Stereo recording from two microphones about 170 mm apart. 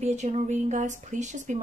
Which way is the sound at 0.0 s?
40° right (ahead or behind).